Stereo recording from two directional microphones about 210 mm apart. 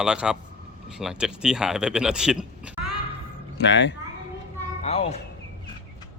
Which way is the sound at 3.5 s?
60° left (ahead or behind).